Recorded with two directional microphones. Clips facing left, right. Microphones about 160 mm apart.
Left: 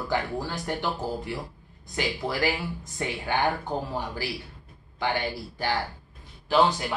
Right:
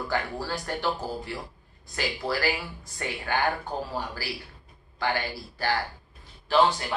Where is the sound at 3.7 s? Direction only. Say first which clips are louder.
Left 2 dB; 20° left (ahead or behind).